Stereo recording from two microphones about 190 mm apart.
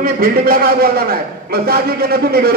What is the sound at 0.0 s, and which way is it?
A man's voice, 50° right (ahead or behind).